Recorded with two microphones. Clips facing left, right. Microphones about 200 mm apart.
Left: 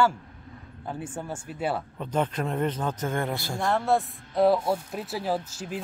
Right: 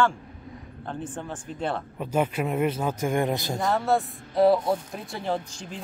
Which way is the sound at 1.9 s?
10° right (ahead or behind).